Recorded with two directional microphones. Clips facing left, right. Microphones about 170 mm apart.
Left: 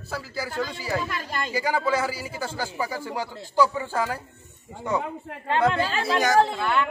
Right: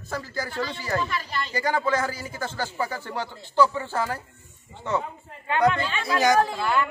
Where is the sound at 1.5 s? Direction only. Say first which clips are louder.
Even; 10° left (ahead or behind).